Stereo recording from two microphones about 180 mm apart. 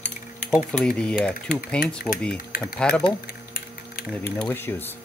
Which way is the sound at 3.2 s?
60° left (ahead or behind).